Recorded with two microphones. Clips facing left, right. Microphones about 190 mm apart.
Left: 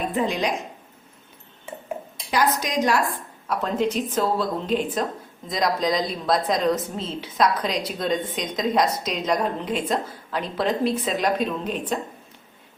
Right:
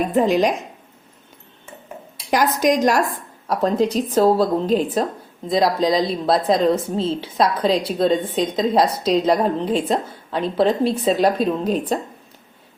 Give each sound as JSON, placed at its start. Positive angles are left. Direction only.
{"t": 0.2, "sound": "a woman's voice", "side_deg": -40}
{"t": 2.3, "sound": "a woman's voice", "side_deg": -45}